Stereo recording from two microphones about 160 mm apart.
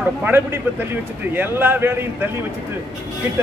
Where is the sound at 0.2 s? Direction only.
15° right (ahead or behind).